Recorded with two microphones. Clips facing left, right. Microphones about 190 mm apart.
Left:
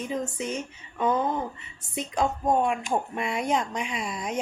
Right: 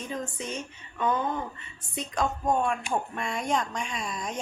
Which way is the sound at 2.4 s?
10° left (ahead or behind).